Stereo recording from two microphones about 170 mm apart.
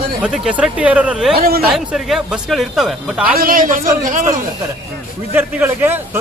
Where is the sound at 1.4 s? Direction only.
65° right (ahead or behind).